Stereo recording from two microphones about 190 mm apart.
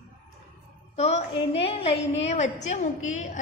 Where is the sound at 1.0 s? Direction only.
35° left (ahead or behind).